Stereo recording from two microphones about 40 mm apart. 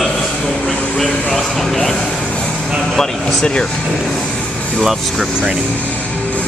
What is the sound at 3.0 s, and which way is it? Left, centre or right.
Speech, centre.